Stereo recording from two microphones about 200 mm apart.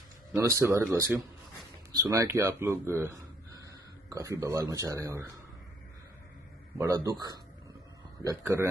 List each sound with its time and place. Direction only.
0.3 s speech: 15° right (ahead or behind)
2.0 s speech: 15° right (ahead or behind)
6.8 s speech: 15° right (ahead or behind)